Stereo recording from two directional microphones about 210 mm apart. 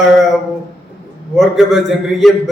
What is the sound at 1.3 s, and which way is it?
Speech, centre (ahead or behind).